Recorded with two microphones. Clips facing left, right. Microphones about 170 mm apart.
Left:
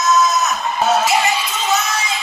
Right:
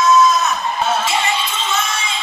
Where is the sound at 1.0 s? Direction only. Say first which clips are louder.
Left 3 dB; 30° right (ahead or behind).